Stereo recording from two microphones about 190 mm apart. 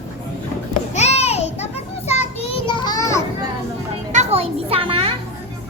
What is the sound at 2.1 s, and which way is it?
Child singing, 35° left (ahead or behind).